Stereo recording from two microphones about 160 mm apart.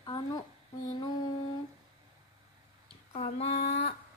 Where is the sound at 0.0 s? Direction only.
30° left (ahead or behind).